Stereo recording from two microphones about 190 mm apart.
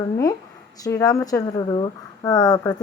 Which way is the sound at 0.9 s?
15° left (ahead or behind).